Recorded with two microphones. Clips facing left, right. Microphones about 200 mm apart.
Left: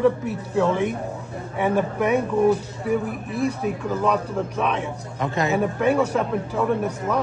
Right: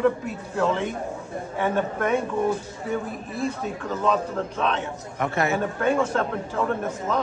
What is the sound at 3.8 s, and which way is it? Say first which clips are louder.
A man's voice: even; 10° left (ahead or behind).